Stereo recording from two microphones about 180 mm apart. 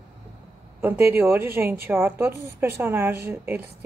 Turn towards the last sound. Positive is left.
turn(degrees=-15)  # may be behind; listen again after turning